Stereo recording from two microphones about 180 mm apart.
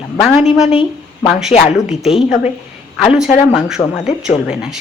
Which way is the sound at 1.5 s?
35° left (ahead or behind).